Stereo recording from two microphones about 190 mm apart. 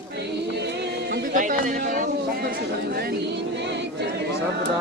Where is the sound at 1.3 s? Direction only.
45° right (ahead or behind).